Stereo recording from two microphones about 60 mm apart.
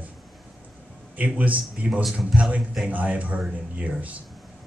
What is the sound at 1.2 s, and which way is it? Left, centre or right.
Speech, right.